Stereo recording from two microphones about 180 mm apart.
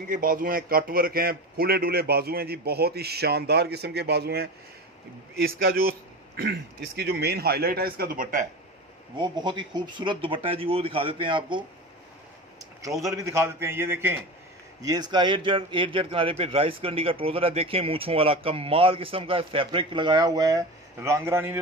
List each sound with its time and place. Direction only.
0.1 s a man's voice: 50° right (ahead or behind)
9.2 s speech: 25° right (ahead or behind)
12.8 s a man's voice: 15° right (ahead or behind)